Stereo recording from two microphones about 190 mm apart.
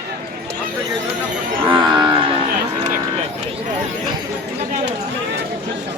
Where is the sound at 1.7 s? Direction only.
25° right (ahead or behind).